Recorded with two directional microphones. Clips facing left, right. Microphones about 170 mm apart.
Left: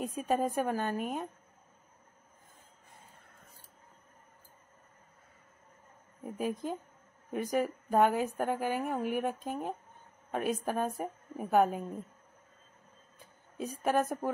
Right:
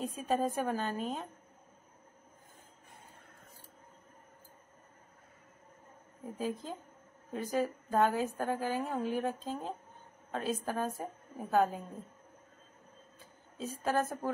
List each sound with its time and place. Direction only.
0.0 s a woman's voice: 15° left (ahead or behind)
6.2 s a woman's voice: 15° left (ahead or behind)
13.6 s a woman's voice: 15° left (ahead or behind)